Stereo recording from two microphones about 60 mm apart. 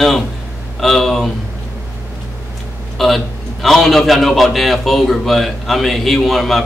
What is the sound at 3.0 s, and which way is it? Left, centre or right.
A man's voice, centre.